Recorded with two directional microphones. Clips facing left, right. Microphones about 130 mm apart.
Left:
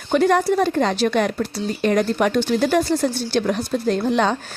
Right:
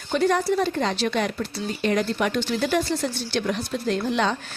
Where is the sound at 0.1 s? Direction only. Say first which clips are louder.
Left 4 dB; 55° left (ahead or behind).